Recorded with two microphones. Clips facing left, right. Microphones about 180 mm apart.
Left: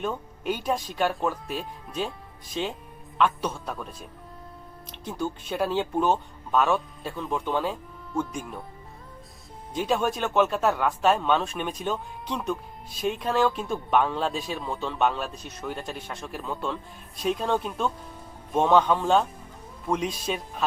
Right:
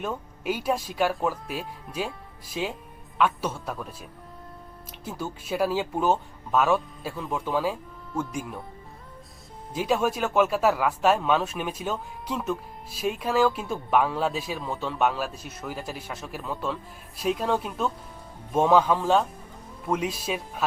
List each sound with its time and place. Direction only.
0.0 s speech: 5° right (ahead or behind)
9.7 s speech: 5° right (ahead or behind)